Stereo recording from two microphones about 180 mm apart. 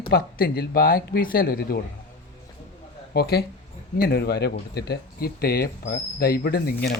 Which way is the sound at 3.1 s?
60° left (ahead or behind).